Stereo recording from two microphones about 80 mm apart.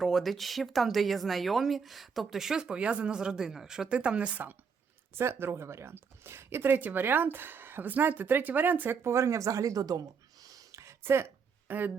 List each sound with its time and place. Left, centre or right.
0.0 s speech: centre
5.1 s speech: right
10.4 s a sound: right